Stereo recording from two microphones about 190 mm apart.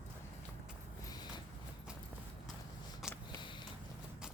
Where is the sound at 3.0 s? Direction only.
Centre (ahead or behind).